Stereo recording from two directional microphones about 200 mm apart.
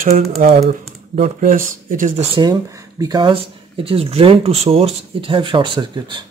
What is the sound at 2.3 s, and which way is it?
Speech, 20° right (ahead or behind).